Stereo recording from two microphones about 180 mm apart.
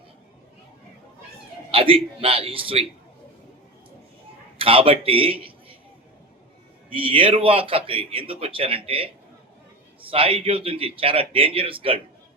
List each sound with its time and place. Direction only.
1.7 s speech: 30° right (ahead or behind)
4.5 s a man's voice: 30° right (ahead or behind)
6.9 s speech: 30° right (ahead or behind)
10.1 s speech: 30° right (ahead or behind)